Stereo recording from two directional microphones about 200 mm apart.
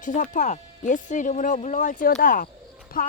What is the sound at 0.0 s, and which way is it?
Speech, 40° left (ahead or behind).